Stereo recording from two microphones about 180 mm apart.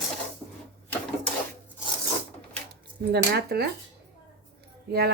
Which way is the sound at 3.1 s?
65° right (ahead or behind).